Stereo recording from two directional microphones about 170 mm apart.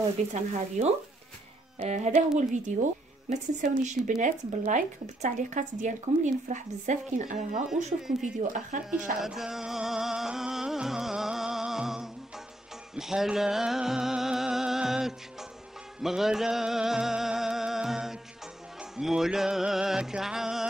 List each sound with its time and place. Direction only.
0.3 s speech: 40° right (ahead or behind)
7.6 s music: 5° right (ahead or behind)
8.2 s speech: 50° right (ahead or behind)
9.2 s music: 5° right (ahead or behind)